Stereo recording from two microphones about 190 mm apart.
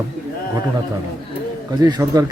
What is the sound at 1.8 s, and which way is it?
Speech, 20° right (ahead or behind).